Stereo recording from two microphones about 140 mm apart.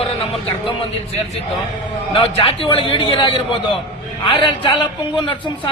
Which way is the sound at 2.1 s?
40° left (ahead or behind).